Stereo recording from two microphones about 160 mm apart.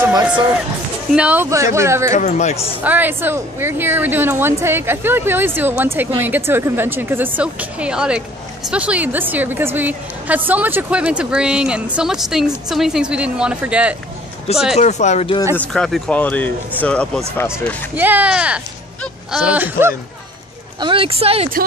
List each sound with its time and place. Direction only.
1.1 s speech: 10° right (ahead or behind)
2.1 s speech: 45° left (ahead or behind)
2.8 s speech: 10° right (ahead or behind)
14.8 s speech: 45° left (ahead or behind)
15.5 s speech: 5° left (ahead or behind)
17.9 s speech: 10° right (ahead or behind)
20.8 s a woman's voice: 35° right (ahead or behind)